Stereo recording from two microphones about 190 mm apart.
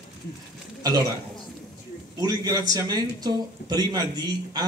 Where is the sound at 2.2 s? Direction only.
20° right (ahead or behind).